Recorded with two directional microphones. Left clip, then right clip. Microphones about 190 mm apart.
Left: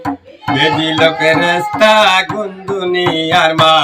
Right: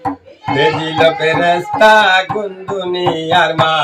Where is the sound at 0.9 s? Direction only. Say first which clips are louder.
Left 1 dB; 20° right (ahead or behind).